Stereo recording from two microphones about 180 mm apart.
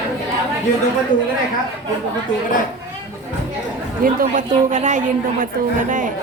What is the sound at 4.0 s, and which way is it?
A woman's voice, 50° right (ahead or behind).